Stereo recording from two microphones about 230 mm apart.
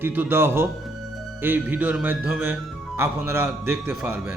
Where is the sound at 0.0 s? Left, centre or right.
Centre.